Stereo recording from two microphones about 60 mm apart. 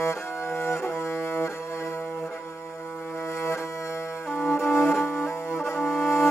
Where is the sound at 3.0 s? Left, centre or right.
Left.